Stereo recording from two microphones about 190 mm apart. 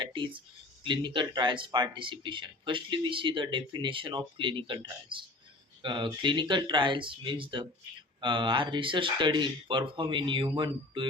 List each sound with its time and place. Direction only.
0.0 s speech: 25° right (ahead or behind)